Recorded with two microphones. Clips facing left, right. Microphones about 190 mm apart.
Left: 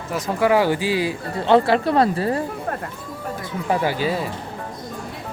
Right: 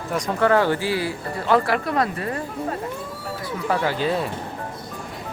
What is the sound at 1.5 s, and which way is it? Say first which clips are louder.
Speech: left 4 dB; 25° left (ahead or behind).